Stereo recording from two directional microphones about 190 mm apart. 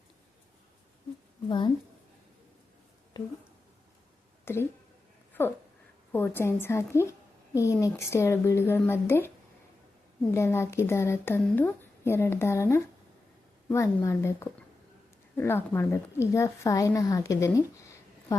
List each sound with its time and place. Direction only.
1.5 s speech: 25° left (ahead or behind)
3.1 s speech: 20° left (ahead or behind)
4.4 s a woman's voice: 10° left (ahead or behind)
10.3 s a woman's voice: 15° left (ahead or behind)